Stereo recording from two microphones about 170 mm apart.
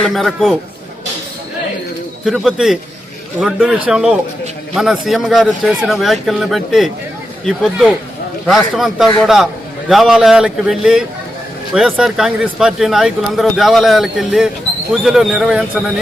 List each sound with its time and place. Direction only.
0.0 s speech: centre (ahead or behind)
2.2 s speech: centre (ahead or behind)